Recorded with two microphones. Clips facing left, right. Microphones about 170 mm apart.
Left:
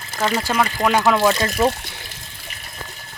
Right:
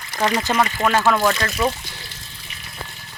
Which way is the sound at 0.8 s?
15° left (ahead or behind).